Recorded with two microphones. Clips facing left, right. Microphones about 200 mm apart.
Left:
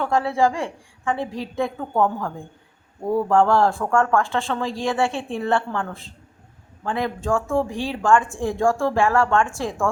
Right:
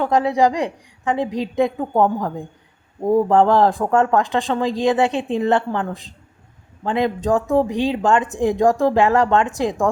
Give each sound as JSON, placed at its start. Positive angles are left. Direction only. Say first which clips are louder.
{"t": 0.0, "sound": "speech", "louder": "right 3 dB", "side_deg": -20}